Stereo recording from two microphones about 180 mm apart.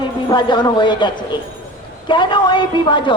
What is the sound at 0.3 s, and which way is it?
Speech, 25° left (ahead or behind).